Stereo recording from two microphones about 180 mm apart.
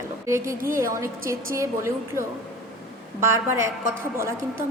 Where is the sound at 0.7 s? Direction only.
15° right (ahead or behind).